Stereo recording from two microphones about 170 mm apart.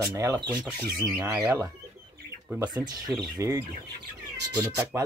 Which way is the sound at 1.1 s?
5° right (ahead or behind).